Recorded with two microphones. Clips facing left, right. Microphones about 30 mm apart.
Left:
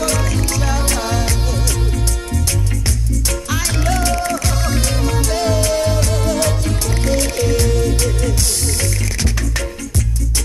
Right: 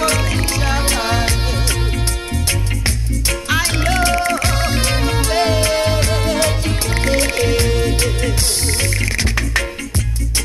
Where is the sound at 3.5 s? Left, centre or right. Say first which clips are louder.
Right 3 dB; right.